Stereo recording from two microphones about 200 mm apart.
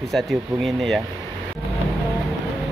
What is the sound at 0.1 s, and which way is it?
Speech, centre (ahead or behind).